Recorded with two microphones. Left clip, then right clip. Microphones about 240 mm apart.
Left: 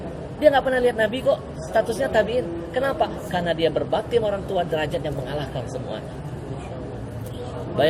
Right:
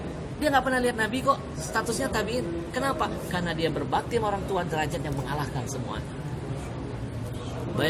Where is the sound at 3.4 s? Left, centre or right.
Right.